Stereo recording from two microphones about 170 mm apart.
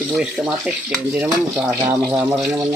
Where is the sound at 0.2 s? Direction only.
5° right (ahead or behind).